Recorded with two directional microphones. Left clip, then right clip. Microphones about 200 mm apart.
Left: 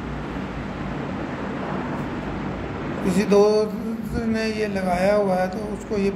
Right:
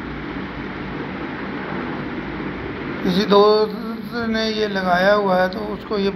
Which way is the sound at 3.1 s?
15° left (ahead or behind).